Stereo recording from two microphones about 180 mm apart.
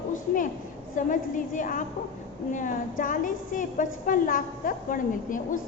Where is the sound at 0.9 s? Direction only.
45° left (ahead or behind).